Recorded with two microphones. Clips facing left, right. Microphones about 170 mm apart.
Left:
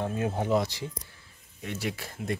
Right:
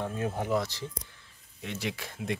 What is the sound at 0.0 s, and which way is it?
Speech, 20° left (ahead or behind).